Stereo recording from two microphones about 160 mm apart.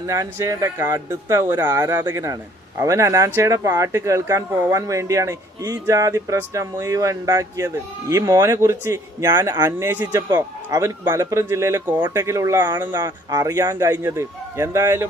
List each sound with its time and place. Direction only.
0.1 s speech: 20° right (ahead or behind)